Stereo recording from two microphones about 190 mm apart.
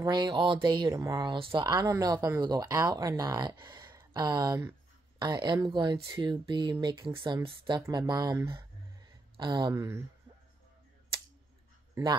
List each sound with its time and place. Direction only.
0.0 s speech: 25° right (ahead or behind)
11.9 s a man's voice: 25° right (ahead or behind)